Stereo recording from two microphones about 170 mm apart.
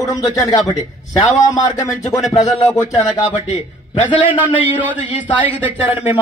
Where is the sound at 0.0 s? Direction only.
20° left (ahead or behind).